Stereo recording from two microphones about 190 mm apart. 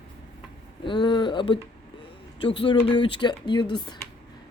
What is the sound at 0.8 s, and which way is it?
Speech, 25° left (ahead or behind).